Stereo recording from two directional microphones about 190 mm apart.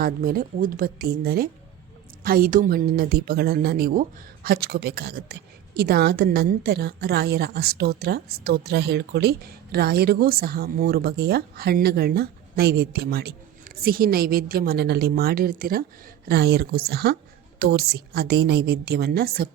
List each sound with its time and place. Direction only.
0.0 s a woman's voice: 50° right (ahead or behind)